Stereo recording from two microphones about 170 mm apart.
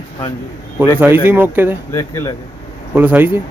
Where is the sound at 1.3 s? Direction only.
15° right (ahead or behind).